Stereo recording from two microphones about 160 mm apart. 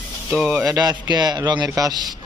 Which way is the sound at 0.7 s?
25° right (ahead or behind).